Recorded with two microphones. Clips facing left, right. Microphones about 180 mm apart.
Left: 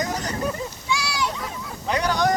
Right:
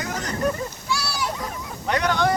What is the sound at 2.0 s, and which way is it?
Speech, 40° left (ahead or behind).